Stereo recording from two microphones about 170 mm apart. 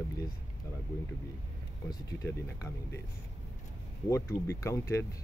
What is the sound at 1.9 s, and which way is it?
Speech, 20° left (ahead or behind).